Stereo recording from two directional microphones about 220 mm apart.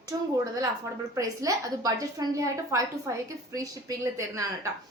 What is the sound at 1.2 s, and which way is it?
A woman's voice, 15° right (ahead or behind).